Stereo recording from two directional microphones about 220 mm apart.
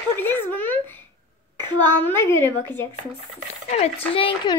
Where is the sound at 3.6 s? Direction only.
30° left (ahead or behind).